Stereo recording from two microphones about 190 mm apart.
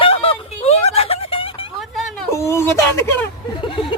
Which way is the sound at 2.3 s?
15° left (ahead or behind).